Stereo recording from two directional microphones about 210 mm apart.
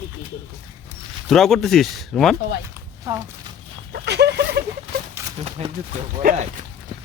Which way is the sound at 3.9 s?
50° right (ahead or behind).